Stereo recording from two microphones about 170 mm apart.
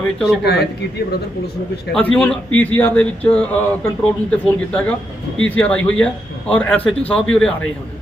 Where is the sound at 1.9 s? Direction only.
5° left (ahead or behind).